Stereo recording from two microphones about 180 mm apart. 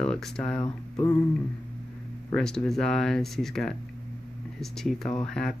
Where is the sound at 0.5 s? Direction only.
25° left (ahead or behind).